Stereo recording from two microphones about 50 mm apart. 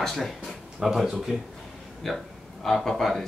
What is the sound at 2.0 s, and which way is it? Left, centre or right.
Speech, centre.